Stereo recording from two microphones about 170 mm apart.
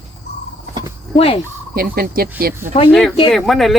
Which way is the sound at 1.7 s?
65° right (ahead or behind).